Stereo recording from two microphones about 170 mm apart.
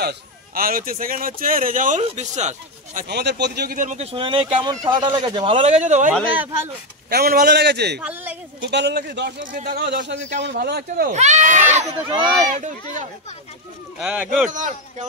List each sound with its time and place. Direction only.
0.6 s speech: 60° right (ahead or behind)
3.1 s speech: 80° right; by 5.6 s 30° right (ahead or behind)
5.6 s speech: 45° right (ahead or behind)
6.3 s speech: 10° right (ahead or behind)
7.1 s a man's voice: 65° right (ahead or behind)
8.0 s speech: 10° right (ahead or behind)
8.5 s a man's voice: 90° right
9.5 s a man's voice: 60° right (ahead or behind)
11.1 s speech: 45° right (ahead or behind)
13.9 s speech: 5° right (ahead or behind)
14.5 s speech: 45° right (ahead or behind)